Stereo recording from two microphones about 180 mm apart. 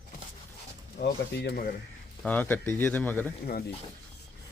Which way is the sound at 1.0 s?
65° left (ahead or behind).